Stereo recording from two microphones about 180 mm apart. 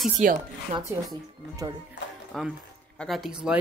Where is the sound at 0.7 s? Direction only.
25° right (ahead or behind).